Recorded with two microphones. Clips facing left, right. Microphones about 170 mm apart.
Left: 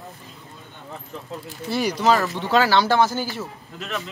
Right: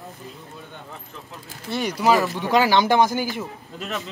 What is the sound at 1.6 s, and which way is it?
Speech, centre (ahead or behind).